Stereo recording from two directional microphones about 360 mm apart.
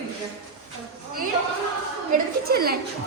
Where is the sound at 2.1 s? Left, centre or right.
Right.